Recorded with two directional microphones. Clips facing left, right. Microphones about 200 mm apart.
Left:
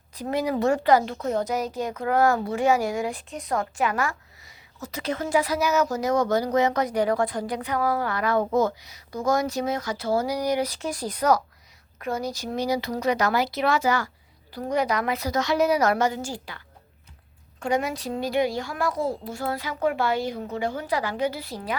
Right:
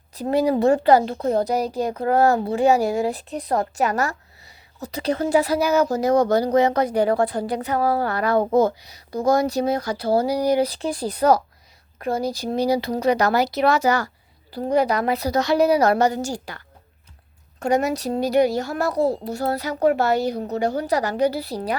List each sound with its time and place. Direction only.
0.1 s speech: 35° right (ahead or behind)